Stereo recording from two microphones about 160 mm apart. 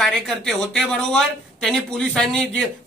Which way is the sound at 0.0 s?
Centre (ahead or behind).